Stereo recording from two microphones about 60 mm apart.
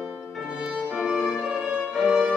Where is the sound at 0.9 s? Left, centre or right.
Centre.